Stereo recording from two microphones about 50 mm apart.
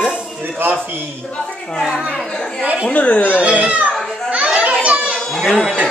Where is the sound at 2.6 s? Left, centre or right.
Right.